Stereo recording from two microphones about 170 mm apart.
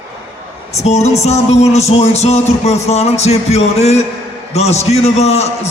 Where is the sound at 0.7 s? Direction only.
40° left (ahead or behind).